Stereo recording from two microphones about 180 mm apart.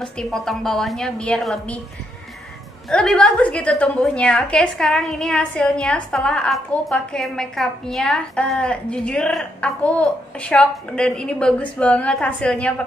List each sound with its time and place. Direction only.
0.0 s a woman's voice: 5° left (ahead or behind)
2.9 s a woman's voice: 5° left (ahead or behind)